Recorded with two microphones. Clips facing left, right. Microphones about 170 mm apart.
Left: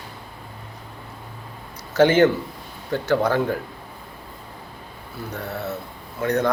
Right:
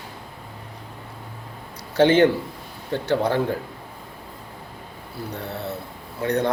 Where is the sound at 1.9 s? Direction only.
30° right (ahead or behind).